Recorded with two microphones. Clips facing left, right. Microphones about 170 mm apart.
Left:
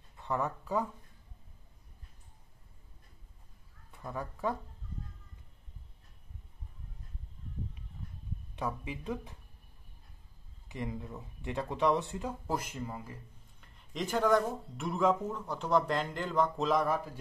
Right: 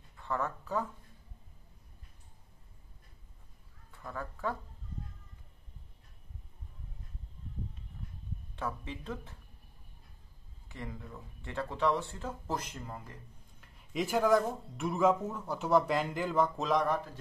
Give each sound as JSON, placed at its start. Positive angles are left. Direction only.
{"t": 0.2, "sound": "speech", "side_deg": 15}
{"t": 3.9, "sound": "speech", "side_deg": 15}
{"t": 8.5, "sound": "speech", "side_deg": 15}
{"t": 10.7, "sound": "speech", "side_deg": 20}
{"t": 13.7, "sound": "a man's voice", "side_deg": -5}